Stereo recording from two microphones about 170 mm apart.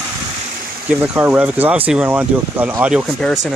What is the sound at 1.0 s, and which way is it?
Speech, 10° right (ahead or behind).